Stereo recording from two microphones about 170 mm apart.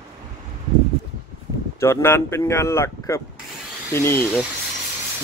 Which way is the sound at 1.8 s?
15° left (ahead or behind).